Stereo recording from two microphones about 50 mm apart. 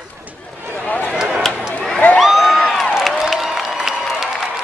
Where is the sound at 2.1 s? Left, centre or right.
Centre.